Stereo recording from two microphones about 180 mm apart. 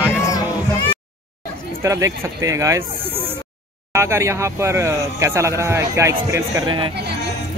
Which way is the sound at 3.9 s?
15° right (ahead or behind).